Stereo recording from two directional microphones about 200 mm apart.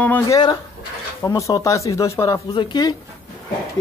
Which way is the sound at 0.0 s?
10° left (ahead or behind).